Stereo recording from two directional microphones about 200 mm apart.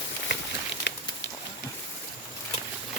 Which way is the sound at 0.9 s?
60° left (ahead or behind).